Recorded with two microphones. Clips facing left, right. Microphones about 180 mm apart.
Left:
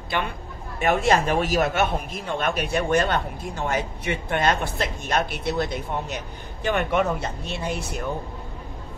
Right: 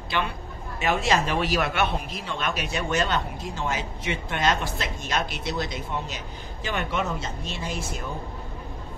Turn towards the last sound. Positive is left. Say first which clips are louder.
# left 3 dB
turn(degrees=65)  # may be behind; listen again after turning